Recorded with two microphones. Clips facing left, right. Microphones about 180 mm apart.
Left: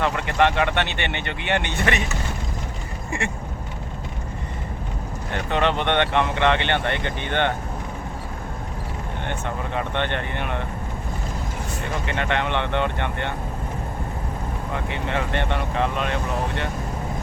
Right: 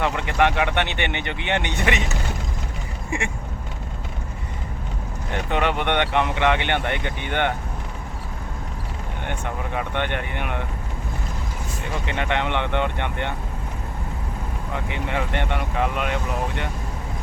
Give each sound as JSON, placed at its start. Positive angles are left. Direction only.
{"t": 0.0, "sound": "speech", "side_deg": -15}
{"t": 5.3, "sound": "speech", "side_deg": -15}
{"t": 9.7, "sound": "speech", "side_deg": -10}
{"t": 12.0, "sound": "speech", "side_deg": -15}
{"t": 14.8, "sound": "speech", "side_deg": -15}